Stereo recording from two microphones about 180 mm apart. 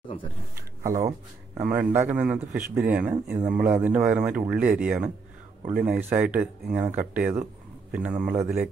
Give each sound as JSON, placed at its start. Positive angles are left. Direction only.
{"t": 1.5, "sound": "speech", "side_deg": -10}